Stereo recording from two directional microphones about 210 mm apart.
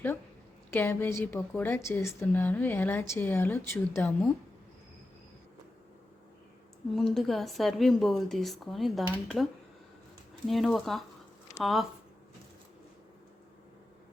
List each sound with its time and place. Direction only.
0.7 s a woman's voice: 10° left (ahead or behind)
6.9 s a woman's voice: centre (ahead or behind)